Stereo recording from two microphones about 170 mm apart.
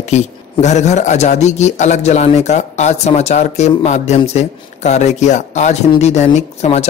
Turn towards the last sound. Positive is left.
turn(degrees=40)  # may be behind; listen again after turning